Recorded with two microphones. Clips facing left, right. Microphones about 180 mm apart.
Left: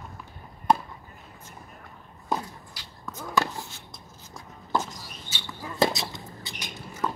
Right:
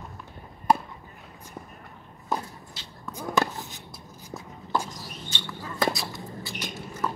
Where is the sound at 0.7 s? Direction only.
5° right (ahead or behind).